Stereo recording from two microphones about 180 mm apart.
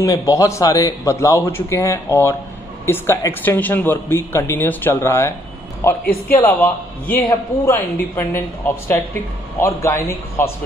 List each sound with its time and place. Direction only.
0.0 s speech: 20° left (ahead or behind)